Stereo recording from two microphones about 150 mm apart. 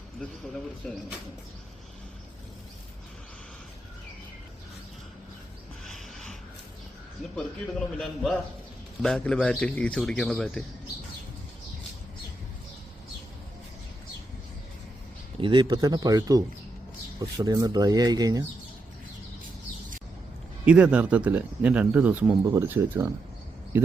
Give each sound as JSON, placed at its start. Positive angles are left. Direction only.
{"t": 0.8, "sound": "a man's voice", "side_deg": 5}
{"t": 5.8, "sound": "a sound", "side_deg": 0}
{"t": 7.9, "sound": "a man's voice", "side_deg": 0}
{"t": 15.4, "sound": "speech", "side_deg": -30}
{"t": 20.7, "sound": "speech", "side_deg": -10}